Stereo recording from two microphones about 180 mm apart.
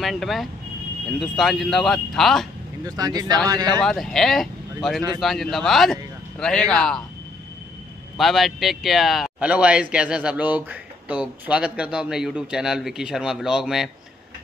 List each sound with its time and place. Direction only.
0.0 s speech: centre (ahead or behind)
2.8 s speech: 20° right (ahead or behind)
3.8 s speech: centre (ahead or behind)
8.2 s speech: centre (ahead or behind)